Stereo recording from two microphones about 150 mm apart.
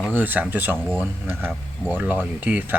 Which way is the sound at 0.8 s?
5° left (ahead or behind).